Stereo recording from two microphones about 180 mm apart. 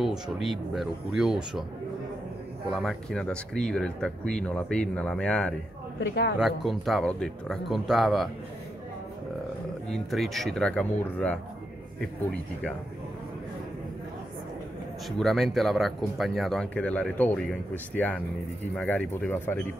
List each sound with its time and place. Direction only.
0.0 s speech: centre (ahead or behind)
2.7 s speech: centre (ahead or behind)
5.9 s speech: 70° left (ahead or behind)
6.4 s speech: centre (ahead or behind)
9.8 s speech: centre (ahead or behind)
15.0 s speech: centre (ahead or behind)